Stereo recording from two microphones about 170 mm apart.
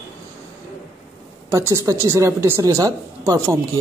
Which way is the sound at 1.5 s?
20° right (ahead or behind).